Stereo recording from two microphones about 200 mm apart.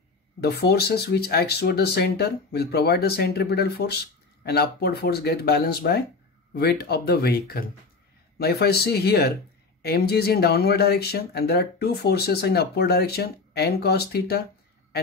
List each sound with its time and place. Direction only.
0.4 s speech: 55° left (ahead or behind)